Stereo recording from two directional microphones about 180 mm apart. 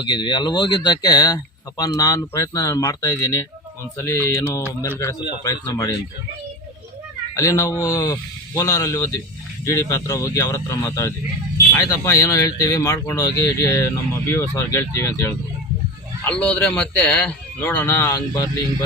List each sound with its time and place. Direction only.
0.0 s a man's voice: 25° left (ahead or behind)
7.3 s a man's voice: 20° left (ahead or behind)